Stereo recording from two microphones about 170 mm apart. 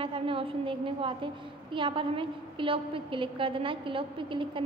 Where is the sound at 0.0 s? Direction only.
30° right (ahead or behind).